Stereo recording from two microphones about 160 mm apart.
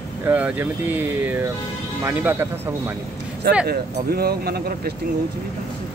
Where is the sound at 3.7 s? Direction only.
75° right (ahead or behind).